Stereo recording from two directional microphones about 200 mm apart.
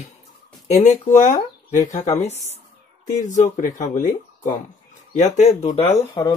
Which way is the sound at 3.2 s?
40° left (ahead or behind).